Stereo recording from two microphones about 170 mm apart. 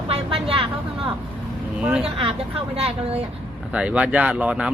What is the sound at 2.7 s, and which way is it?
Speech, 35° right (ahead or behind).